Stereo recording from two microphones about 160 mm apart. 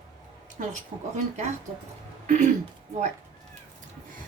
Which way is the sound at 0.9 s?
45° right (ahead or behind).